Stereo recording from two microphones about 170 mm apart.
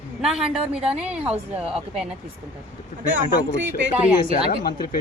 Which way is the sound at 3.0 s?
90° right.